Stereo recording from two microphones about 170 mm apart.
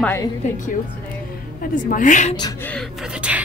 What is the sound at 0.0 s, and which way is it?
Speech, 15° left (ahead or behind).